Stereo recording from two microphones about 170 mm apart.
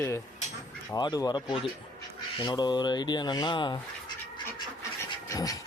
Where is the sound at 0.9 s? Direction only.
20° left (ahead or behind).